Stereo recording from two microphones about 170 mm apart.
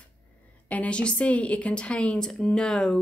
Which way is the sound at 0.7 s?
5° left (ahead or behind).